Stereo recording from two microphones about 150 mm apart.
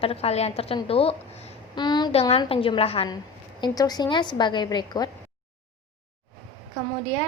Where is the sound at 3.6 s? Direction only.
25° left (ahead or behind).